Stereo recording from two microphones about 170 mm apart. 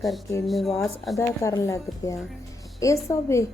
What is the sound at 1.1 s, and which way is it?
A woman's voice, 20° left (ahead or behind).